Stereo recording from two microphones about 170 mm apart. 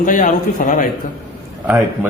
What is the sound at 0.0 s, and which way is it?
Speech, 50° left (ahead or behind).